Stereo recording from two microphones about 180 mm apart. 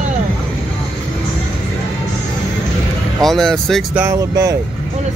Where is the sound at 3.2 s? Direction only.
Centre (ahead or behind).